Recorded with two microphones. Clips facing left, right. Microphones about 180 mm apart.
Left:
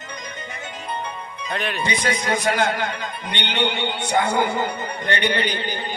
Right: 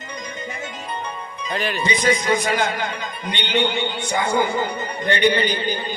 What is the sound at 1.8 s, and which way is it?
A man's voice, 60° left (ahead or behind).